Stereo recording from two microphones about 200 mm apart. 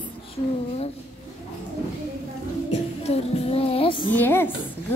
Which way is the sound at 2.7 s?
30° left (ahead or behind).